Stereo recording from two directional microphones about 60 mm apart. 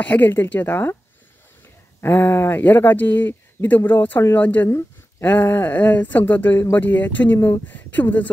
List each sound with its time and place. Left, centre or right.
0.0 s speech: left
2.0 s speech: left